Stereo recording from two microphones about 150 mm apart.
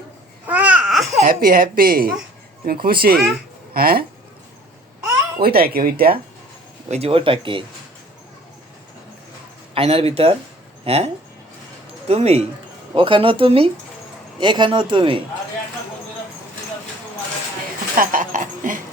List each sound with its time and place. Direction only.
0.4 s babbling: 10° right (ahead or behind)
1.3 s speech: 75° right (ahead or behind)
5.4 s speech: 90° right
6.8 s a man's voice: 45° right (ahead or behind)
9.7 s a man's voice: 40° right (ahead or behind)
17.9 s a sound: 65° right (ahead or behind)